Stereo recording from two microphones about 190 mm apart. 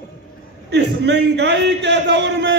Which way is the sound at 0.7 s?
65° right (ahead or behind).